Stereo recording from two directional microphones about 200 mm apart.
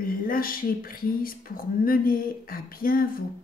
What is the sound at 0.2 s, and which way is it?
Speech, 45° left (ahead or behind).